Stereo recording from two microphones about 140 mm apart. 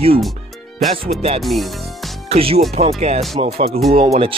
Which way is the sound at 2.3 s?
45° right (ahead or behind).